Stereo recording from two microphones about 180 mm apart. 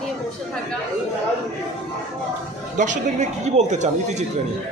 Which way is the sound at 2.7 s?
45° right (ahead or behind).